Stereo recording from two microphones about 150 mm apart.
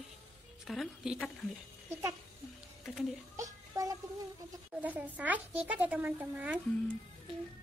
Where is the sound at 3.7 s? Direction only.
25° right (ahead or behind).